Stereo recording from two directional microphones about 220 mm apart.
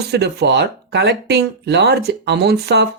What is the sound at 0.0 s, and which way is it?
Speech, 45° right (ahead or behind).